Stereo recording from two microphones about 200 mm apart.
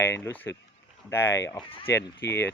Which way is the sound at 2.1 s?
10° left (ahead or behind).